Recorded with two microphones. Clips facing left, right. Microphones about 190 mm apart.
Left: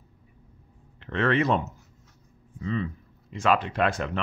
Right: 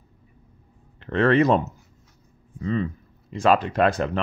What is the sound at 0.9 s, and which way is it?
Speech, 40° right (ahead or behind).